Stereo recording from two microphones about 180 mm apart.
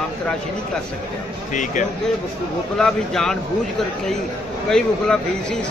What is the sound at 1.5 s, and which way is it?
Speech, 45° left (ahead or behind).